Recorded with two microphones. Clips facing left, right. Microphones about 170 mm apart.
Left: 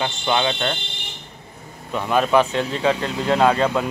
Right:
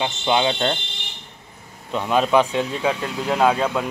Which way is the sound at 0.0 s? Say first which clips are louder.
Right 1 dB; 20° right (ahead or behind).